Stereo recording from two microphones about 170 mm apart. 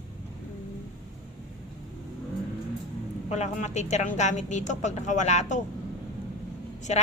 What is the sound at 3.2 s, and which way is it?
Speech, 40° left (ahead or behind).